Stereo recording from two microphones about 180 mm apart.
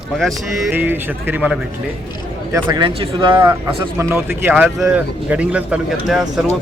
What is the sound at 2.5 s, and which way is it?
Speech, 25° right (ahead or behind).